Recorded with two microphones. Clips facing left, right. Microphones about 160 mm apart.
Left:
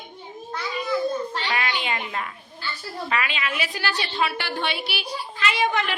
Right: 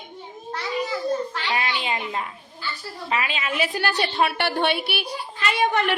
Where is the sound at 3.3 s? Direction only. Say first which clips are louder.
Right 3 dB; 40° right (ahead or behind).